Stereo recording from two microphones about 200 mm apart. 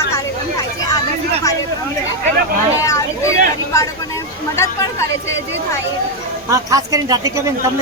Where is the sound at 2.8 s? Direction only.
15° left (ahead or behind).